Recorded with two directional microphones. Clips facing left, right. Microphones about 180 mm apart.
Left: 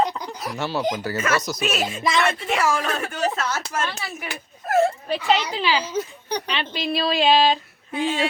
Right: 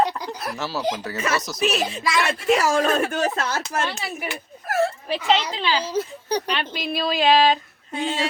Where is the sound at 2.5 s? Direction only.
40° right (ahead or behind).